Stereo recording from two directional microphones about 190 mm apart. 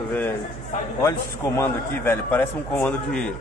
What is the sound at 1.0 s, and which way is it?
A man's voice, 15° left (ahead or behind).